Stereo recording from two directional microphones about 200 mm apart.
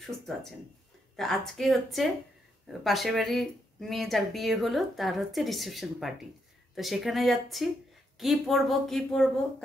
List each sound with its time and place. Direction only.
0.0 s a woman's voice: centre (ahead or behind)